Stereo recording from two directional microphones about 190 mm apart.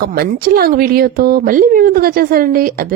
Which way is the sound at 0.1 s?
50° right (ahead or behind).